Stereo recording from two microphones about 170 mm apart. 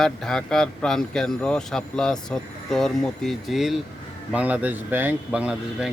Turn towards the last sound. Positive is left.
turn(degrees=-5)  # may be behind; listen again after turning